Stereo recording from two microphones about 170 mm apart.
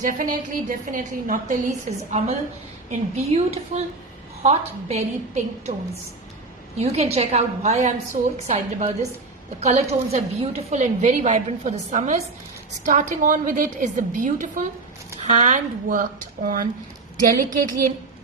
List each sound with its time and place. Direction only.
0.0 s a woman's voice: 50° right (ahead or behind)
3.3 s a woman's voice: 40° right (ahead or behind)